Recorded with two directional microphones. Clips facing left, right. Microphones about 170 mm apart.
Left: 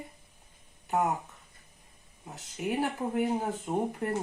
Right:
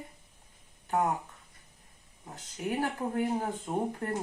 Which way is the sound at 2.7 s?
10° left (ahead or behind).